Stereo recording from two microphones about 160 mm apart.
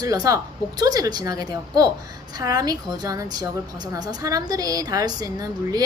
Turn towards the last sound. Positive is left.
turn(degrees=-25)  # may be behind; listen again after turning